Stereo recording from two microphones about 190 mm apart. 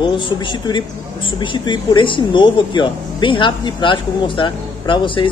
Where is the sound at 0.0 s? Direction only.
25° left (ahead or behind).